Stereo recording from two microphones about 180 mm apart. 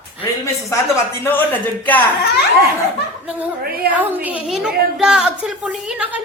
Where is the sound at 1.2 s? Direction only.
10° left (ahead or behind).